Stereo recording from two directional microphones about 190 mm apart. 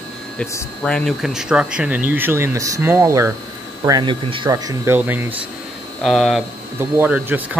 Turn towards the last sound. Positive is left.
turn(degrees=-10)  # may be behind; listen again after turning